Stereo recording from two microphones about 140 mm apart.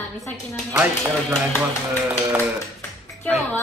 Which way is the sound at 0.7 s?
20° right (ahead or behind).